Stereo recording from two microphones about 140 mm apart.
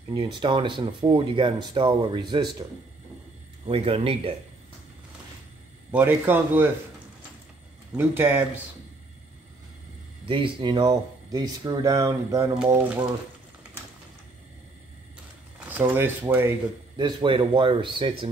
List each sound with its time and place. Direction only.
0.1 s speech: 35° right (ahead or behind)
3.6 s speech: 45° right (ahead or behind)
5.9 s speech: 15° right (ahead or behind)
7.9 s speech: 15° right (ahead or behind)
10.2 s speech: 35° right (ahead or behind)
15.7 s speech: 15° right (ahead or behind)
16.9 s speech: 35° right (ahead or behind)